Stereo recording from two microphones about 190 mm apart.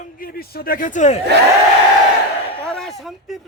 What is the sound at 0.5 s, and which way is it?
Speech, 50° left (ahead or behind).